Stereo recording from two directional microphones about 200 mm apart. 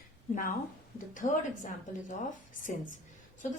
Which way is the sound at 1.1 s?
40° left (ahead or behind).